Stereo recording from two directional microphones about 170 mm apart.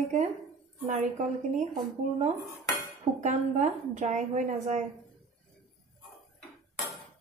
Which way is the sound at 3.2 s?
45° right (ahead or behind).